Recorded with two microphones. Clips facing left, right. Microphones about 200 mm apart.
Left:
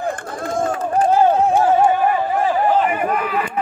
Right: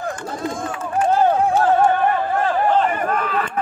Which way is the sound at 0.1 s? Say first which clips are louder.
Left 2 dB; 55° left (ahead or behind).